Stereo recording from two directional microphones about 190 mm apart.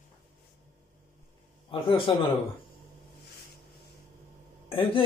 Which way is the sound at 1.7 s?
25° left (ahead or behind).